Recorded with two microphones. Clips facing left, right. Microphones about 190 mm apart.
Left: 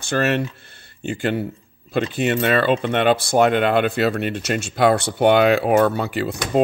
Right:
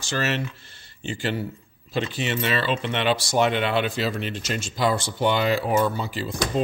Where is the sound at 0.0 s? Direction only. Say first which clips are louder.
Left 6 dB; 55° left (ahead or behind).